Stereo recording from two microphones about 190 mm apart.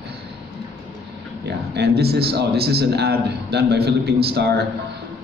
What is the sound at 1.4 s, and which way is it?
A man's voice, 60° right (ahead or behind).